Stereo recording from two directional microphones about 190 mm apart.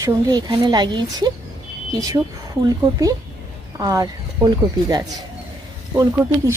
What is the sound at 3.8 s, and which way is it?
Speech, 20° right (ahead or behind).